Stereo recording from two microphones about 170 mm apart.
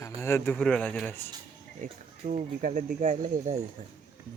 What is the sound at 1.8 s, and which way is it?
Speech, 50° right (ahead or behind).